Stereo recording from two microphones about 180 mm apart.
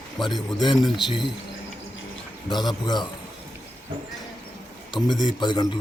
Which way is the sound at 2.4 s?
25° left (ahead or behind).